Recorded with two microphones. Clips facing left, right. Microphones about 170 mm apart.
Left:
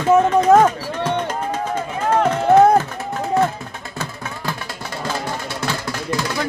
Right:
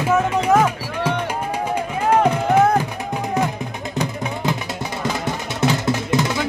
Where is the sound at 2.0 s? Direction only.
10° right (ahead or behind).